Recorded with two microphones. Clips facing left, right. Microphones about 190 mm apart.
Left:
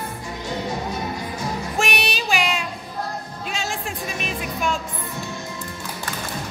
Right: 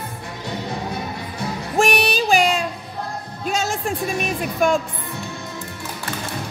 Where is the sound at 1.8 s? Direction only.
35° right (ahead or behind).